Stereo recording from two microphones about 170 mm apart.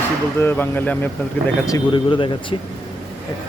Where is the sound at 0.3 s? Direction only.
10° left (ahead or behind).